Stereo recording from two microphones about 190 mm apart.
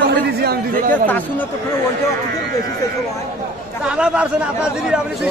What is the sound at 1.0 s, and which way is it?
Speech, 10° left (ahead or behind).